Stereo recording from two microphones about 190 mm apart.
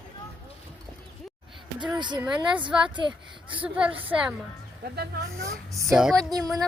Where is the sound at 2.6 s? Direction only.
25° right (ahead or behind).